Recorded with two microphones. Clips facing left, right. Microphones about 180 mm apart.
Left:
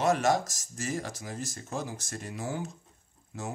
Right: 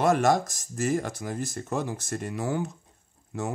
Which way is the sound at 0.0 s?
50° right (ahead or behind).